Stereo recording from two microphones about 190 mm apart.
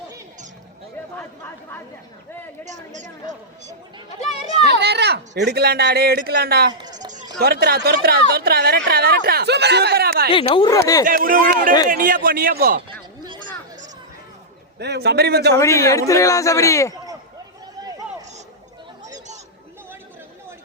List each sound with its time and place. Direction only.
2.6 s speech: 40° right (ahead or behind)
4.6 s speech: 60° right (ahead or behind)
6.7 s a sound: 20° right (ahead or behind)
7.3 s speech: 55° right (ahead or behind)
10.2 s speech: 25° left (ahead or behind)
11.0 s a man's voice: 45° right (ahead or behind)
14.8 s speech: 60° right (ahead or behind)
15.5 s a man's voice: 15° left (ahead or behind)